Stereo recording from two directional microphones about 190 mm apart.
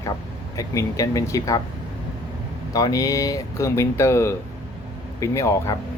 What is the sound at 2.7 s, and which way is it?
Speech, 20° left (ahead or behind).